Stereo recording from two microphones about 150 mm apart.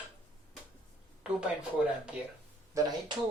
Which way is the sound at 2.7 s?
20° right (ahead or behind).